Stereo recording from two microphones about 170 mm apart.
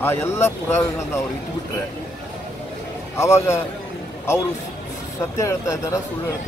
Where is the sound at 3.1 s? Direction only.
15° left (ahead or behind).